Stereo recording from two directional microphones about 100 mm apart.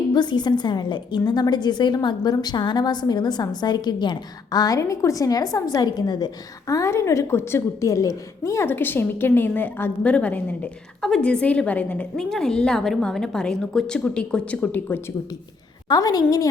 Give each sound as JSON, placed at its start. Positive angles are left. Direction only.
{"t": 0.1, "sound": "a woman's voice", "side_deg": 45}
{"t": 15.9, "sound": "a woman's voice", "side_deg": 40}